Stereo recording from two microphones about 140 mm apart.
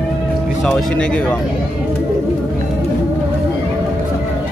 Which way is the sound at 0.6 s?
5° left (ahead or behind).